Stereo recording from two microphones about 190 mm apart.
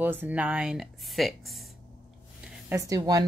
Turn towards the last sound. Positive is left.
turn(degrees=-20)  # may be behind; listen again after turning